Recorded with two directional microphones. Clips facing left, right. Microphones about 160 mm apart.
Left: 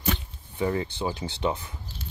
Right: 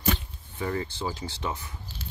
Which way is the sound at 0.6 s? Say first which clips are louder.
Left 4 dB; 20° left (ahead or behind).